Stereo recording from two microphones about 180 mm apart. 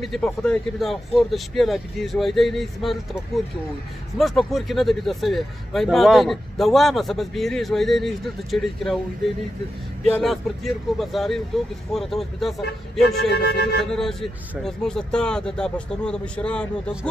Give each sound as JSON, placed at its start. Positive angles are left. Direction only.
{"t": 0.0, "sound": "speech", "side_deg": 5}
{"t": 4.2, "sound": "speech", "side_deg": 0}
{"t": 10.1, "sound": "speech", "side_deg": 0}
{"t": 13.1, "sound": "a sound", "side_deg": 65}
{"t": 13.9, "sound": "speech", "side_deg": 0}